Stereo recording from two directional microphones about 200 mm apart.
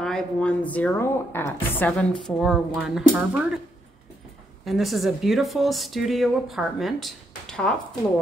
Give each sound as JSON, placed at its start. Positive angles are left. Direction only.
{"t": 0.0, "sound": "a woman's voice", "side_deg": 5}
{"t": 4.6, "sound": "speech", "side_deg": 0}